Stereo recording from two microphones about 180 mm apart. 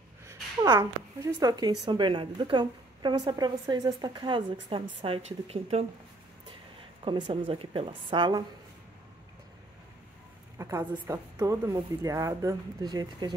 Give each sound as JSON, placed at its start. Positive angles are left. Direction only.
{"t": 0.3, "sound": "a woman's voice", "side_deg": -20}
{"t": 7.1, "sound": "a woman's voice", "side_deg": -25}
{"t": 10.6, "sound": "a woman's voice", "side_deg": -15}